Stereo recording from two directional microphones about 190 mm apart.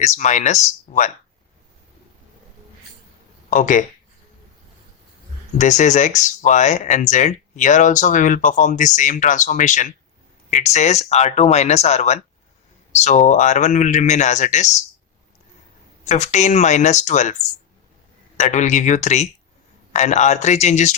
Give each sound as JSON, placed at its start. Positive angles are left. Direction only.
{"t": 0.0, "sound": "speech", "side_deg": 40}
{"t": 3.5, "sound": "speech", "side_deg": 40}
{"t": 5.5, "sound": "speech", "side_deg": 40}
{"t": 16.0, "sound": "speech", "side_deg": 35}
{"t": 18.3, "sound": "speech", "side_deg": 40}